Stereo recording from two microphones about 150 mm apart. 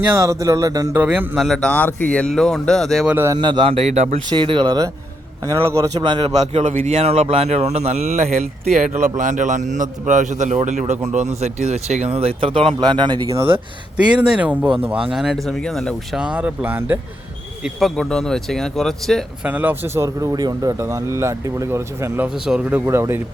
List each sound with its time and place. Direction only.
0.0 s speech: 20° right (ahead or behind)
0.9 s speech: 10° right (ahead or behind)
1.5 s speech: 10° left (ahead or behind)
3.1 s speech: 15° right (ahead or behind)
3.3 s speech: 35° right (ahead or behind); by 4.2 s 50° right (ahead or behind)
4.3 s speech: 35° right (ahead or behind)
6.0 s speech: 35° right (ahead or behind)
6.7 s speech: 60° right (ahead or behind)
6.9 s speech: 40° right (ahead or behind)
13.9 s speech: 10° right (ahead or behind)
16.2 s speech: 5° right (ahead or behind)
17.6 s speech: centre (ahead or behind)
19.5 s speech: 10° right (ahead or behind)